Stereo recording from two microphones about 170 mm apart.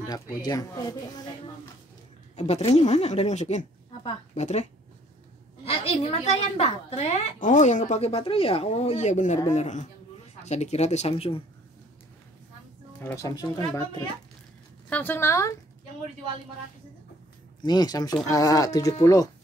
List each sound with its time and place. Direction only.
0.0 s speech: 20° left (ahead or behind)
2.3 s a woman's voice: 40° left (ahead or behind)
13.0 s speech: 20° left (ahead or behind)
14.9 s speech: 10° left (ahead or behind)
17.6 s speech: 25° left (ahead or behind)